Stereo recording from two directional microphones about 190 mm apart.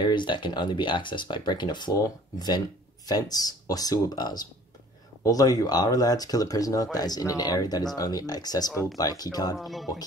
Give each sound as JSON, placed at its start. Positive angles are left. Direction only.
{"t": 0.0, "sound": "speech", "side_deg": 25}